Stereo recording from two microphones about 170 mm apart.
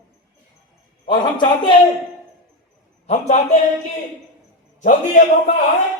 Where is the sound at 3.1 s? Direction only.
40° left (ahead or behind).